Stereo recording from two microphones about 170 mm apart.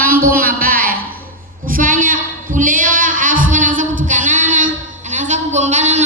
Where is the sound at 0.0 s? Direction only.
60° right (ahead or behind).